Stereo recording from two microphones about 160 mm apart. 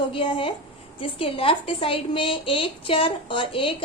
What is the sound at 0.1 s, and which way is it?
A woman's voice, 35° left (ahead or behind).